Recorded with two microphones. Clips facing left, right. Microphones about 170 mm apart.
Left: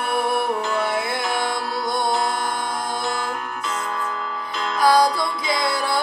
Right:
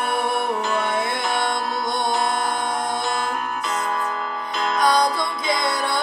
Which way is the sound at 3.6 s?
55° right (ahead or behind).